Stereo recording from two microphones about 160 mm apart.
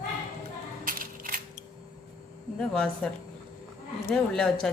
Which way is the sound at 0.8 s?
60° right (ahead or behind).